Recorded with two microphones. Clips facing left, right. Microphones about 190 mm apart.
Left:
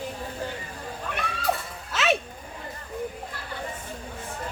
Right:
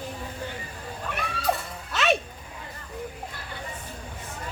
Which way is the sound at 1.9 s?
Centre (ahead or behind).